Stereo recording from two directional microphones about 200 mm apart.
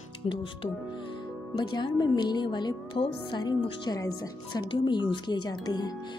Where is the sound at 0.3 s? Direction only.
25° left (ahead or behind).